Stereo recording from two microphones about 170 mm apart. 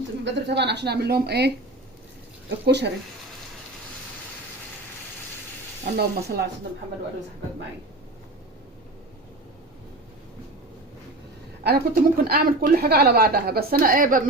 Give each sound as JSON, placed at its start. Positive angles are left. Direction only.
{"t": 0.3, "sound": "a woman's voice", "side_deg": -90}
{"t": 2.6, "sound": "speech", "side_deg": -80}
{"t": 6.0, "sound": "speech", "side_deg": -70}
{"t": 11.6, "sound": "a woman's voice", "side_deg": -60}